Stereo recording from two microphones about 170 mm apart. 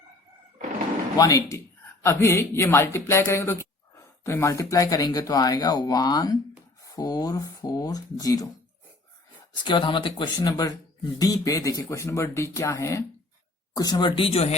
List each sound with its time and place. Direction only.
1.1 s speech: 20° left (ahead or behind)
9.6 s speech: 30° left (ahead or behind)